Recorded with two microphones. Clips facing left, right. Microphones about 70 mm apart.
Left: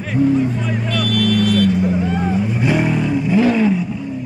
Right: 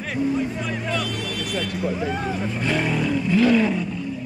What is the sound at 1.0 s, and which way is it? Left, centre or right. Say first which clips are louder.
Speech: left 12 dB; left.